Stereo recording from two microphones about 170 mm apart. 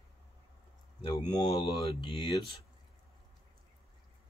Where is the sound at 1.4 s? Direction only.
35° left (ahead or behind).